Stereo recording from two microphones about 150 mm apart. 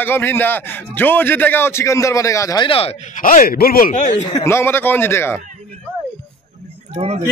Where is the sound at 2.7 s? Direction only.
40° left (ahead or behind).